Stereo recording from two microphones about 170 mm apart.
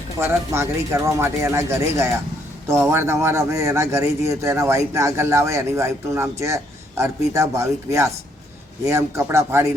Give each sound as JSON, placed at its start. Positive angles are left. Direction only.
{"t": 0.2, "sound": "speech", "side_deg": -15}